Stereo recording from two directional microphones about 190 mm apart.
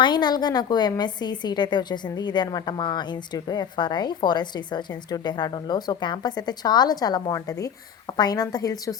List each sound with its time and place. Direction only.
0.0 s a woman's voice: 25° left (ahead or behind)